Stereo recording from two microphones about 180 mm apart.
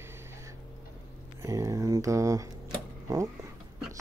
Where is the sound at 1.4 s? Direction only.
15° right (ahead or behind).